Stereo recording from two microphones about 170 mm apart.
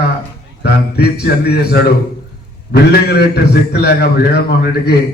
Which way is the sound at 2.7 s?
70° left (ahead or behind).